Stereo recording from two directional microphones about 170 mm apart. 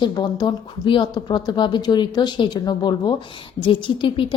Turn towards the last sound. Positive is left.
turn(degrees=30)  # may be behind; listen again after turning